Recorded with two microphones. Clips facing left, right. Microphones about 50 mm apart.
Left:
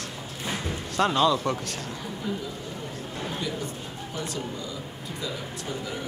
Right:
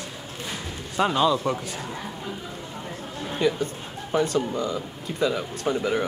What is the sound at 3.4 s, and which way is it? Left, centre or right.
Speech, right.